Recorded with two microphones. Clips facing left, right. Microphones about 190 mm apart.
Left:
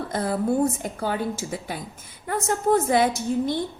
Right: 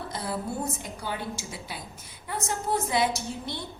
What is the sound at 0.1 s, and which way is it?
A woman's voice, 50° left (ahead or behind).